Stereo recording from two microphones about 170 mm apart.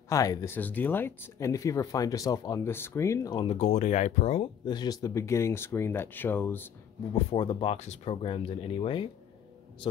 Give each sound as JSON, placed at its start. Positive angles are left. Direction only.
{"t": 0.1, "sound": "speech", "side_deg": 20}
{"t": 0.6, "sound": "speech", "side_deg": 10}
{"t": 3.5, "sound": "speech", "side_deg": 40}
{"t": 4.6, "sound": "speech", "side_deg": 25}
{"t": 7.2, "sound": "speech", "side_deg": 30}